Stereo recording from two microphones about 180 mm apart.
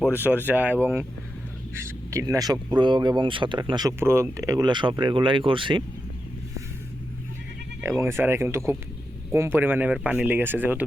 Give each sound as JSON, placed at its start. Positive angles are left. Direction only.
{"t": 0.0, "sound": "speech", "side_deg": -10}
{"t": 7.8, "sound": "speech", "side_deg": -15}